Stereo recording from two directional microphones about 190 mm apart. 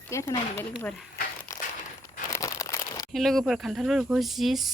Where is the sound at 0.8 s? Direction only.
5° left (ahead or behind).